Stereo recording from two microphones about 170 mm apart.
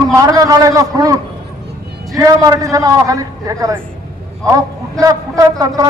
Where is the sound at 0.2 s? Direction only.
20° right (ahead or behind).